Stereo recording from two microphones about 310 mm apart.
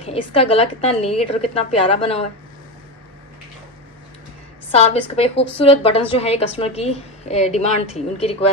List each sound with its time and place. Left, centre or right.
0.3 s a woman's voice: centre
4.6 s a woman's voice: centre